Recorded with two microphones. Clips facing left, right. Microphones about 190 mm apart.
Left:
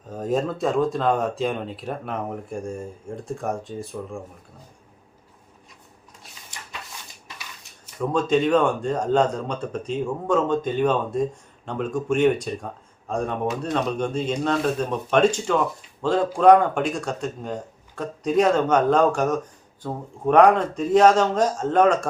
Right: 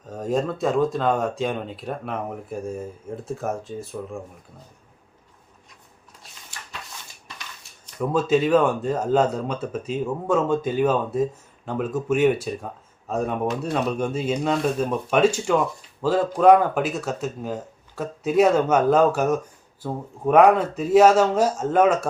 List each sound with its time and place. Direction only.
0.1 s speech: centre (ahead or behind)
6.5 s a sound: 20° left (ahead or behind)
7.9 s speech: 5° right (ahead or behind)